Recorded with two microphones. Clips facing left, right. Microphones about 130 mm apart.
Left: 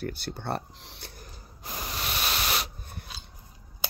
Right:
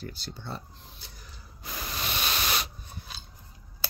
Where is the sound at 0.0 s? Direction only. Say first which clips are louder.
Left 6 dB; 55° left (ahead or behind); by 1.1 s 80° left.